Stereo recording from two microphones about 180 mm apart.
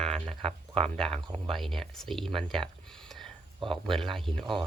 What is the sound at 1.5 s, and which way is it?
Speech, centre (ahead or behind).